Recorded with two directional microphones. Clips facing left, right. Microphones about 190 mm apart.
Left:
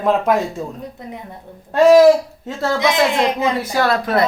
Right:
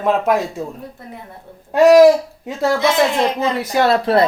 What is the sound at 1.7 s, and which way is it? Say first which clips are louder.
Speech: right 1 dB; 10° right (ahead or behind).